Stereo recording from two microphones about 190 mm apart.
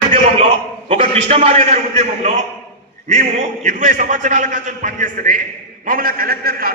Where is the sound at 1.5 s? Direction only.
30° right (ahead or behind).